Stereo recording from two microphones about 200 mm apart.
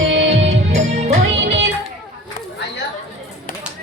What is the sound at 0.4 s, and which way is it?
Music, 35° right (ahead or behind).